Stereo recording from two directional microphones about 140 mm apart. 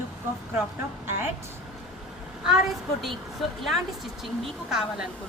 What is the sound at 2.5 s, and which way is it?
Speech, centre (ahead or behind).